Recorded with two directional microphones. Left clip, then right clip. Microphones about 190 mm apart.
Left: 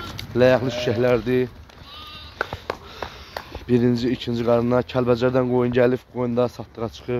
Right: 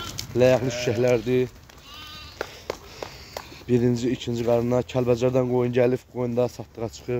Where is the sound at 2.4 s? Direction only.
20° left (ahead or behind).